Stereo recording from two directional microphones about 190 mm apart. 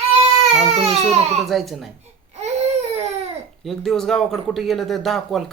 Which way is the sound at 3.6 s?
Centre (ahead or behind).